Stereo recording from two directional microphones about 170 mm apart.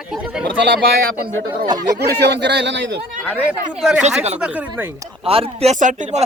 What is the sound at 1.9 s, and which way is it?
Speech, 85° right.